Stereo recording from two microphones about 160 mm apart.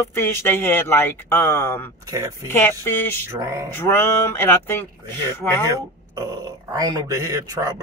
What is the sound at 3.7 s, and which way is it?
Speech, 15° left (ahead or behind).